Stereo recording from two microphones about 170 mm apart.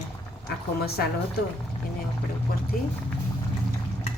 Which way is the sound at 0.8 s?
70° left (ahead or behind).